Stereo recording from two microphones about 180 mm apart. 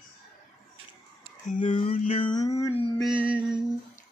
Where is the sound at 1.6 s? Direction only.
30° left (ahead or behind).